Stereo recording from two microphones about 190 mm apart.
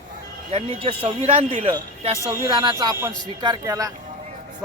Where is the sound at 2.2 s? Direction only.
15° right (ahead or behind).